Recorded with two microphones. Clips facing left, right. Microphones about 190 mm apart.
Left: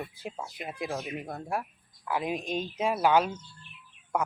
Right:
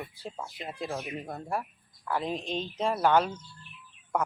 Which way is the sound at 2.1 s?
10° left (ahead or behind).